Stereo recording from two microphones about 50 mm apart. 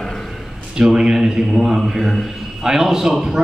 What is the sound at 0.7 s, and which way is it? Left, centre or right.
A man's voice, centre.